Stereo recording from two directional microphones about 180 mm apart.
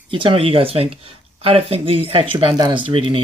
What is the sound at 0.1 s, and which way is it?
Speech, 30° right (ahead or behind).